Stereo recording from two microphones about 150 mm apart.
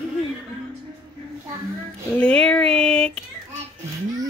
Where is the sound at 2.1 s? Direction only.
5° left (ahead or behind).